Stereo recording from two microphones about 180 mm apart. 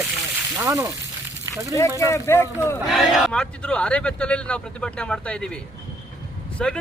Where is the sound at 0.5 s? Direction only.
15° right (ahead or behind).